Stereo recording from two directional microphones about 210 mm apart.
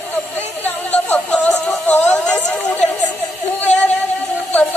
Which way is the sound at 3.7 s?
35° left (ahead or behind).